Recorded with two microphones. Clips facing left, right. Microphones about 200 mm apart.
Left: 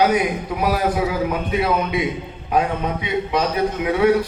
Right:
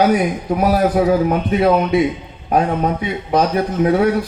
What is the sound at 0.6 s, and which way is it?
Speech, 45° right (ahead or behind).